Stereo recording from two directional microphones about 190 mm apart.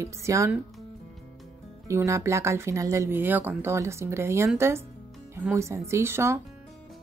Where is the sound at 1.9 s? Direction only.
15° right (ahead or behind).